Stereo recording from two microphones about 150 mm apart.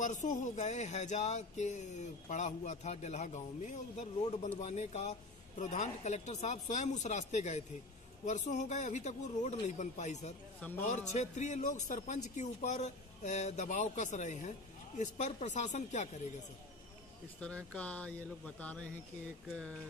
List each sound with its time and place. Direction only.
0.0 s speech: 55° left (ahead or behind)
10.6 s speech: 15° left (ahead or behind)
10.9 s speech: 50° left (ahead or behind)
17.4 s speech: 5° left (ahead or behind)